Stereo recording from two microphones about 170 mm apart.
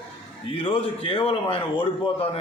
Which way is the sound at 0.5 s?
30° left (ahead or behind).